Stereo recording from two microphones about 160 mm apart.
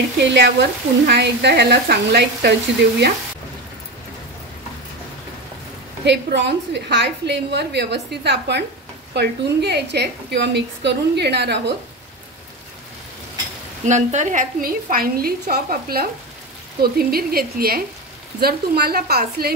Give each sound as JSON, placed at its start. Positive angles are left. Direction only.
{"t": 0.2, "sound": "a woman's voice", "side_deg": -90}
{"t": 6.0, "sound": "a woman's voice", "side_deg": -90}
{"t": 13.8, "sound": "a woman's voice", "side_deg": -50}